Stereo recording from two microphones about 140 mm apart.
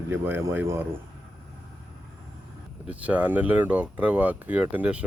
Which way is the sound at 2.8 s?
10° right (ahead or behind).